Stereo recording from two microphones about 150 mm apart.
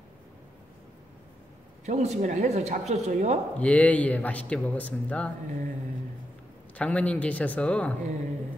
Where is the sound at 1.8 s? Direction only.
50° right (ahead or behind).